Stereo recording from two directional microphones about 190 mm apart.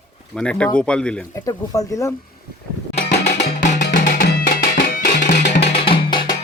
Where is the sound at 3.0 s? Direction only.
60° left (ahead or behind).